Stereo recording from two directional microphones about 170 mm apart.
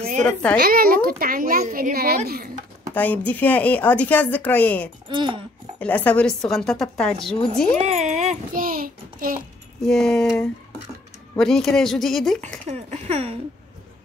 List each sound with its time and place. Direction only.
0.6 s speech: 60° right (ahead or behind)
2.9 s speech: 10° left (ahead or behind)
5.0 s a child's voice: 30° right (ahead or behind)
5.8 s a woman's voice: 10° left (ahead or behind)
7.7 s a sound: 45° right (ahead or behind)
9.8 s a woman's voice: 5° left (ahead or behind)
11.3 s a woman's voice: centre (ahead or behind)
12.4 s speech: 40° right (ahead or behind)